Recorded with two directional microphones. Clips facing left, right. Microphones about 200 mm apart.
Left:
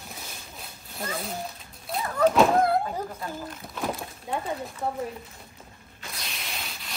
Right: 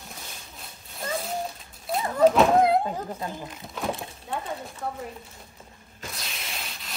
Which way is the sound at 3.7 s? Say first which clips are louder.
Right 1 dB; centre (ahead or behind).